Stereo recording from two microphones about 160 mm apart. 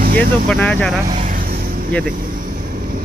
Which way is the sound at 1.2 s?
55° right (ahead or behind).